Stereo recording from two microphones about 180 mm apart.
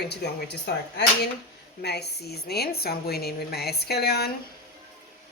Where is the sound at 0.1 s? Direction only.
65° left (ahead or behind).